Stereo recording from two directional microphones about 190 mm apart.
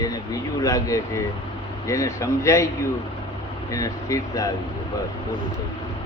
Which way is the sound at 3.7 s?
15° left (ahead or behind).